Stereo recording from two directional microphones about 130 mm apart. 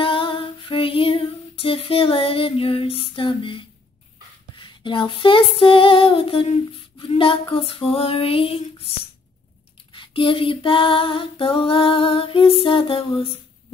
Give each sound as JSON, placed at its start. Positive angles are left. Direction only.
{"t": 0.0, "sound": "female singing", "side_deg": 40}
{"t": 9.9, "sound": "female singing", "side_deg": 40}